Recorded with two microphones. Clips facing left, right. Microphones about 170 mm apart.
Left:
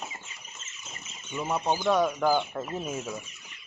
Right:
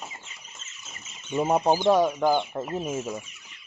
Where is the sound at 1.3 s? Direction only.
40° right (ahead or behind).